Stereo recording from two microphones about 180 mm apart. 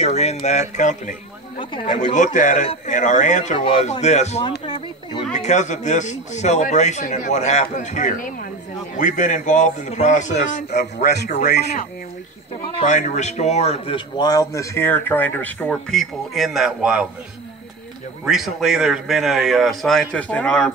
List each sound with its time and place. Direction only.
0.0 s speech: 35° left (ahead or behind)
1.6 s speech: 30° left (ahead or behind)
2.1 s speech: 45° left (ahead or behind)
3.5 s speech: 30° left (ahead or behind)
4.4 s speech: 25° left (ahead or behind)
5.1 s speech: 40° left (ahead or behind)
11.2 s speech: 60° left (ahead or behind)
12.7 s a man's voice: 40° left (ahead or behind); by 17.1 s 5° right (ahead or behind)
18.2 s a man's voice: centre (ahead or behind)